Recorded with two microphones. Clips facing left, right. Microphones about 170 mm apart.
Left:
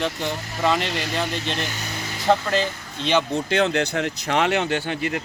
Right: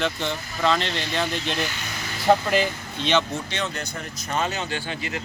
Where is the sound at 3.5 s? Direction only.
70° left (ahead or behind).